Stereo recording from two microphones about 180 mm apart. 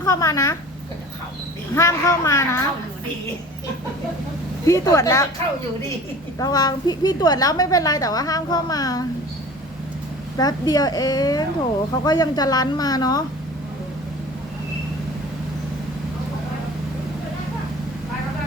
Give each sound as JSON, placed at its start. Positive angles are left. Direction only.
{"t": 0.0, "sound": "a woman's voice", "side_deg": 20}
{"t": 1.7, "sound": "speech", "side_deg": 15}
{"t": 4.6, "sound": "speech", "side_deg": 20}
{"t": 6.4, "sound": "a woman's voice", "side_deg": 20}
{"t": 10.3, "sound": "a woman's voice", "side_deg": 20}